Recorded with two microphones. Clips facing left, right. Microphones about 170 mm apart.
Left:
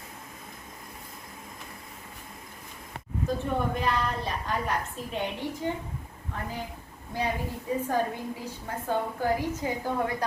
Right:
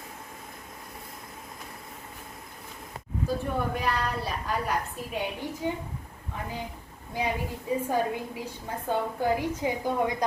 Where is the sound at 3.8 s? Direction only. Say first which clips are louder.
Left 1 dB; 5° right (ahead or behind).